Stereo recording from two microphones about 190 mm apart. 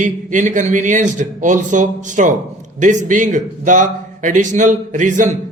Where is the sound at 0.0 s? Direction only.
40° right (ahead or behind).